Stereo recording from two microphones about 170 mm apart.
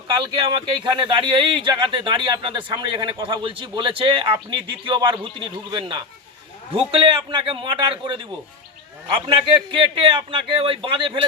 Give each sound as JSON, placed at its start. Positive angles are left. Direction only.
{"t": 0.1, "sound": "a man's voice", "side_deg": -25}